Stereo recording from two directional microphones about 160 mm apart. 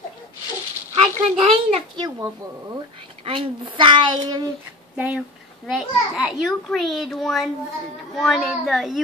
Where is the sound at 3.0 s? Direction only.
35° right (ahead or behind).